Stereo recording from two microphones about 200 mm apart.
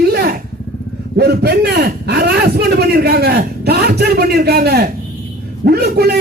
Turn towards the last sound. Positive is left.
turn(degrees=-55)  # may be behind; listen again after turning